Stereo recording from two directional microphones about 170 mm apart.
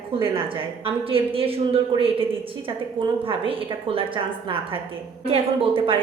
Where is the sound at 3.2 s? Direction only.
30° right (ahead or behind).